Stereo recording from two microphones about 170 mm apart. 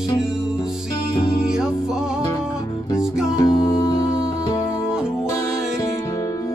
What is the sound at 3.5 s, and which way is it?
Music, 5° right (ahead or behind).